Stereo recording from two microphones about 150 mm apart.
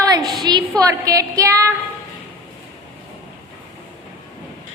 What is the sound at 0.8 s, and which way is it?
Speech, 20° right (ahead or behind).